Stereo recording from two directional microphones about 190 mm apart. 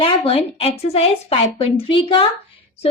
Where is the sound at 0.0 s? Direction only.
30° left (ahead or behind).